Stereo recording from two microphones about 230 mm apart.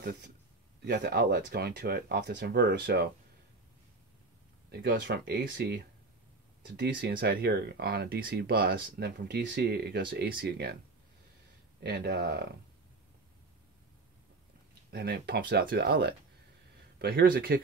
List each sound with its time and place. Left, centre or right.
0.0 s a man's voice: right
4.6 s speech: right
6.8 s speech: right
11.8 s speech: right
14.9 s speech: right